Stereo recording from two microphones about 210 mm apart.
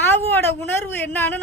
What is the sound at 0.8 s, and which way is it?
Speech, 10° left (ahead or behind).